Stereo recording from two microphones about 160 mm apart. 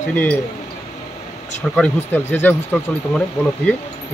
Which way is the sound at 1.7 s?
10° left (ahead or behind).